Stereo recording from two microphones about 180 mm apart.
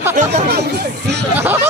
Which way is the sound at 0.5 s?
65° right (ahead or behind).